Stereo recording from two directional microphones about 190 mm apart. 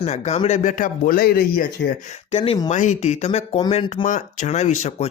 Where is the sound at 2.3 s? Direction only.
30° left (ahead or behind).